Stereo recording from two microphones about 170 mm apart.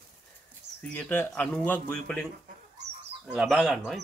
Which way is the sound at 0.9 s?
10° left (ahead or behind).